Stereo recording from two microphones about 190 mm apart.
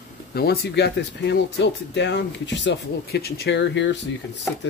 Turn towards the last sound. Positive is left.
turn(degrees=70)  # may be behind; listen again after turning